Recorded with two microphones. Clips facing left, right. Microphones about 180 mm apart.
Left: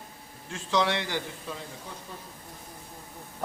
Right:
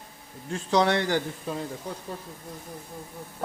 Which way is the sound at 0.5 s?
35° right (ahead or behind).